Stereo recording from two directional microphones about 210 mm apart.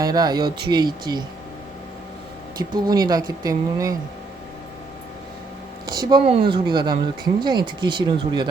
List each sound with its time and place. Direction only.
0.0 s speech: 20° right (ahead or behind)
2.6 s speech: 20° right (ahead or behind)
5.9 s speech: 20° right (ahead or behind)